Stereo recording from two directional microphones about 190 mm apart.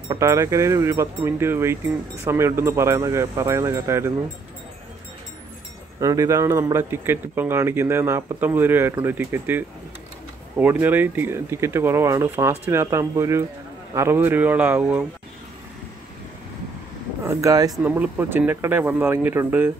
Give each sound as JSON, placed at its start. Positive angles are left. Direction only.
{"t": 0.1, "sound": "a man's voice", "side_deg": -15}
{"t": 5.9, "sound": "a man's voice", "side_deg": -15}
{"t": 17.3, "sound": "a man's voice", "side_deg": -15}
{"t": 17.7, "sound": "a man's voice", "side_deg": -5}